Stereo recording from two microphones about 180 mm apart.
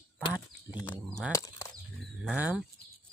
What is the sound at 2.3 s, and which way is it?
Speech, 10° right (ahead or behind).